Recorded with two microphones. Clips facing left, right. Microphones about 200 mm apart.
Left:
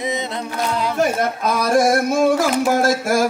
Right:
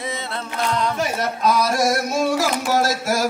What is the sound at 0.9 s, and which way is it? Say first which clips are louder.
Speech: left 5 dB; 50° left (ahead or behind).